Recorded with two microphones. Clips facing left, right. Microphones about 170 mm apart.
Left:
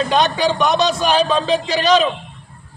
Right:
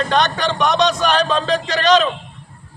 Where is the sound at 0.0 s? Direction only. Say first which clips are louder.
Left 2 dB; 5° left (ahead or behind).